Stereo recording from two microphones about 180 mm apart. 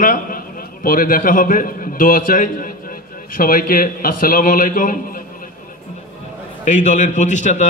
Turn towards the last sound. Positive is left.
turn(degrees=45)  # may be behind; listen again after turning